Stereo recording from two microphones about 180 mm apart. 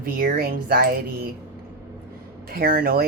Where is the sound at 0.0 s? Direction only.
55° right (ahead or behind).